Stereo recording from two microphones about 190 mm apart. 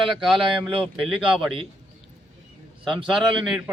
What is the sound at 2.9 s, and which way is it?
Speech, centre (ahead or behind).